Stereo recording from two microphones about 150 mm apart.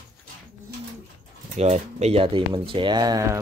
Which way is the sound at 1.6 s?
45° right (ahead or behind).